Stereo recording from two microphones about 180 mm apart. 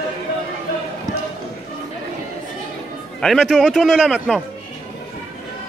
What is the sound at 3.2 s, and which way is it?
A man's voice, centre (ahead or behind).